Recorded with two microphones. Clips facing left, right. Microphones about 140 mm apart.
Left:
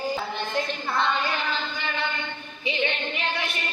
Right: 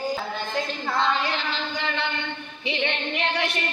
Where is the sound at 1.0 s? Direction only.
90° right.